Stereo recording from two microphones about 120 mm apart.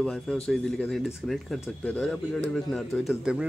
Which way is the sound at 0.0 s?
5° left (ahead or behind).